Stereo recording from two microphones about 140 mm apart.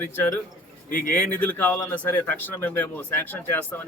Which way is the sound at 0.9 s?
85° left.